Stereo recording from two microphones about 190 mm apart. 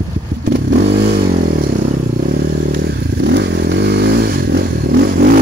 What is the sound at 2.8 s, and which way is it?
Motorcycle, 65° right (ahead or behind).